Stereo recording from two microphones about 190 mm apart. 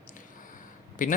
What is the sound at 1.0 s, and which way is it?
Speech, 45° left (ahead or behind).